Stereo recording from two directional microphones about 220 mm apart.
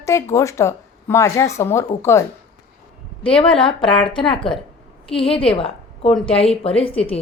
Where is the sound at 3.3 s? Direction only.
25° left (ahead or behind).